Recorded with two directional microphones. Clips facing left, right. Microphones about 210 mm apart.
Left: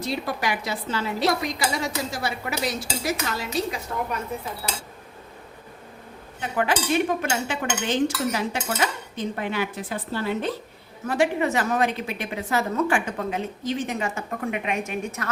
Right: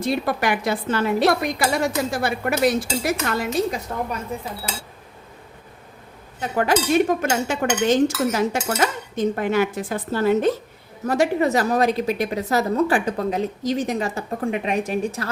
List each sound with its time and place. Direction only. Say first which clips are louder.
0.0 s a woman's voice: right 5 dB; 55° right (ahead or behind)
6.4 s dishes: right 4 dB; 40° right (ahead or behind)
11.0 s a woman's voice: right 3 dB; 40° right (ahead or behind)